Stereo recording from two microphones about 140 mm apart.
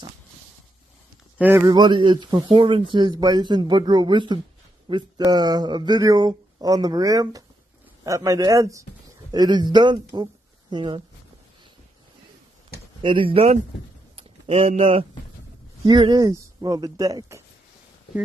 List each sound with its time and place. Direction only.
1.4 s speech: 20° right (ahead or behind)
1.7 s speech: 35° right (ahead or behind)
13.0 s speech: 40° right (ahead or behind)
14.1 s a sound: 45° right (ahead or behind)
15.8 s speech: 35° right (ahead or behind)